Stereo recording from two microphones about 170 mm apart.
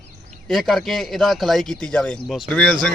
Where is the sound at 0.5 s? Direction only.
Centre (ahead or behind).